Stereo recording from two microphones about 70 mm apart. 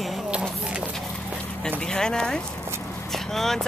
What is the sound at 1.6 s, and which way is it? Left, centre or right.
Speech, centre.